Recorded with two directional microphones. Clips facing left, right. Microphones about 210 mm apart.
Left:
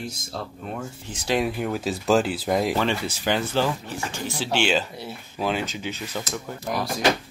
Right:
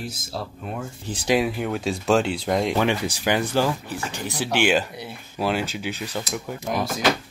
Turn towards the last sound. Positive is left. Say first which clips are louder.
# right 2 dB
turn(degrees=0)  # may be behind; listen again after turning